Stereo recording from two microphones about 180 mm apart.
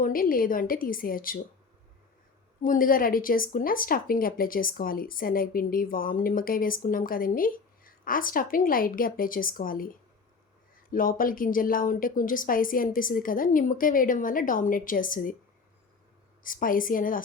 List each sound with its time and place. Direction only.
0.0 s speech: 50° left (ahead or behind)
2.6 s speech: 50° left (ahead or behind)
16.4 s speech: 50° left (ahead or behind)